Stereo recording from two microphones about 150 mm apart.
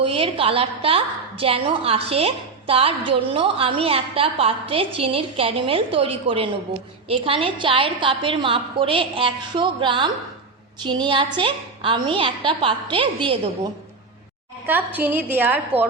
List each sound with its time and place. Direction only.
0.0 s a woman's voice: 40° right (ahead or behind)
14.9 s a woman's voice: 10° right (ahead or behind)